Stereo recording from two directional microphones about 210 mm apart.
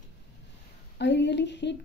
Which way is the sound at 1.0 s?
55° left (ahead or behind).